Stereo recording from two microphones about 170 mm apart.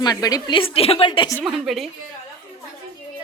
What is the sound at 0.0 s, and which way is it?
A woman's voice, 20° left (ahead or behind).